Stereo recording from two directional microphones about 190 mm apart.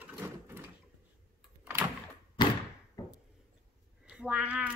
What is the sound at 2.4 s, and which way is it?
Thump, 25° left (ahead or behind).